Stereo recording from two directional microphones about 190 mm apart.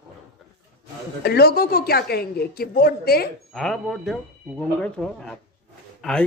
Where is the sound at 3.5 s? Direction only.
Centre (ahead or behind).